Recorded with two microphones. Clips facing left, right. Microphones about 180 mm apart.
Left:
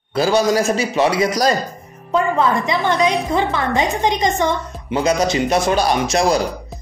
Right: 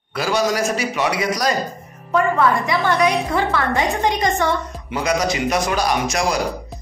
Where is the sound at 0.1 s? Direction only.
30° left (ahead or behind).